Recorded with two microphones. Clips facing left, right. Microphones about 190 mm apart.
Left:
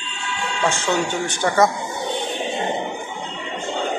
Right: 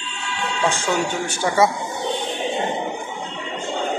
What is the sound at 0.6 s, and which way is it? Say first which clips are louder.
Speech: left 1 dB; 10° right (ahead or behind).